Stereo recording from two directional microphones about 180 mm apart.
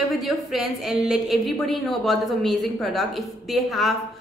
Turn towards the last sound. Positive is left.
turn(degrees=0)  # may be behind; listen again after turning